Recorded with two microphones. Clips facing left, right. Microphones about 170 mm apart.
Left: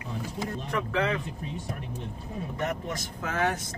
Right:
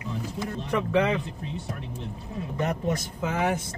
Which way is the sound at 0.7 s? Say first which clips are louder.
Right 5 dB; 20° right (ahead or behind).